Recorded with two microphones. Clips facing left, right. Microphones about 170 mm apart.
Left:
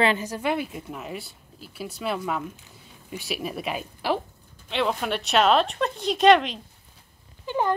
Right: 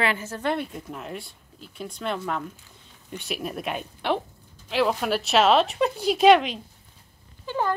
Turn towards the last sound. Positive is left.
turn(degrees=15)  # may be behind; listen again after turning